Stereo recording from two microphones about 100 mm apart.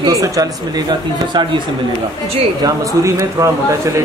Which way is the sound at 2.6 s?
30° right (ahead or behind).